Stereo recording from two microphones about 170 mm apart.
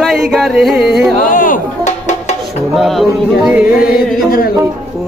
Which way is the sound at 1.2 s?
55° left (ahead or behind).